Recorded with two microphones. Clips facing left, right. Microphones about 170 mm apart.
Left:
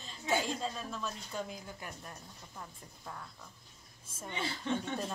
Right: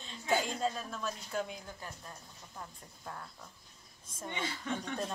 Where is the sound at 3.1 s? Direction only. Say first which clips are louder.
Right 1 dB; centre (ahead or behind).